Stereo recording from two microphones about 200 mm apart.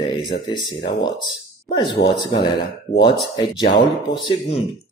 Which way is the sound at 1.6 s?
25° left (ahead or behind).